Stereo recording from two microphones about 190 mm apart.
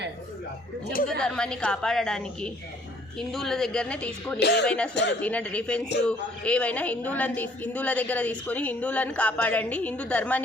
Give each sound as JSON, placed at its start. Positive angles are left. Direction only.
{"t": 1.2, "sound": "a woman's voice", "side_deg": 5}
{"t": 4.4, "sound": "speech", "side_deg": 60}
{"t": 4.6, "sound": "a woman's voice", "side_deg": 5}